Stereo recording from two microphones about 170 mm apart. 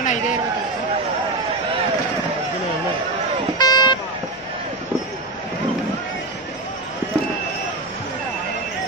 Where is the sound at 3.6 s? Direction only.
25° left (ahead or behind).